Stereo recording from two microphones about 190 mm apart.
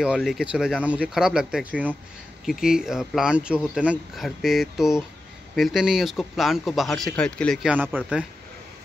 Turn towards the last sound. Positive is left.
turn(degrees=-10)  # may be behind; listen again after turning